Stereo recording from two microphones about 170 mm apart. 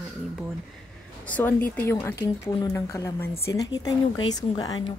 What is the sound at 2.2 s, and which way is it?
Speech, 25° left (ahead or behind).